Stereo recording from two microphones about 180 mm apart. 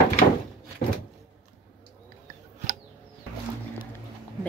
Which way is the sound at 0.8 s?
35° left (ahead or behind).